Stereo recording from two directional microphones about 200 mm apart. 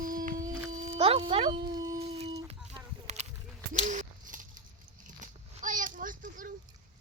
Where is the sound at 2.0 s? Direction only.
30° right (ahead or behind).